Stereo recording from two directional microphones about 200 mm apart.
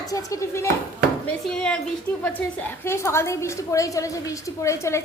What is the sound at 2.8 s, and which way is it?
A woman's voice, 15° left (ahead or behind).